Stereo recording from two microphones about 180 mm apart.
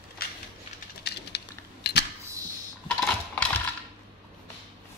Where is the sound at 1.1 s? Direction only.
65° left (ahead or behind).